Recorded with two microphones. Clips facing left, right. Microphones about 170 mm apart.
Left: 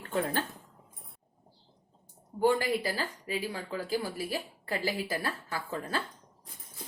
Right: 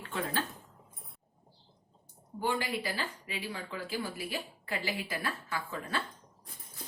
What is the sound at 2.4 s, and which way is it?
Speech, 40° left (ahead or behind).